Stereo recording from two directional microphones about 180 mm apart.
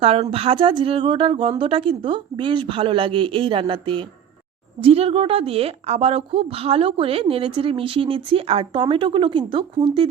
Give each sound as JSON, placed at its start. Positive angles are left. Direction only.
{"t": 0.0, "sound": "a woman's voice", "side_deg": -35}